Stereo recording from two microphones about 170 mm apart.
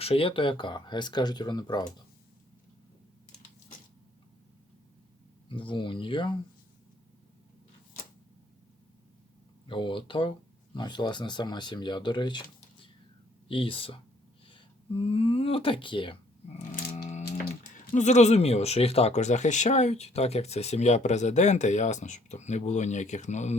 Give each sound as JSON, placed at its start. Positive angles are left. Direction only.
{"t": 0.0, "sound": "speech", "side_deg": 35}
{"t": 5.5, "sound": "speech", "side_deg": 30}
{"t": 9.6, "sound": "speech", "side_deg": 30}
{"t": 13.5, "sound": "speech", "side_deg": 30}
{"t": 16.7, "sound": "a sound", "side_deg": 50}
{"t": 17.2, "sound": "music", "side_deg": 65}
{"t": 17.9, "sound": "speech", "side_deg": 45}